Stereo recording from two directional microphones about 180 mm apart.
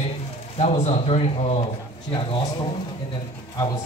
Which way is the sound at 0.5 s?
35° left (ahead or behind).